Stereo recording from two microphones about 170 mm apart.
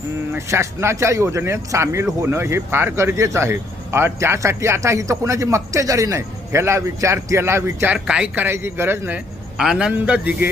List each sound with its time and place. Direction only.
0.3 s speech: 15° right (ahead or behind)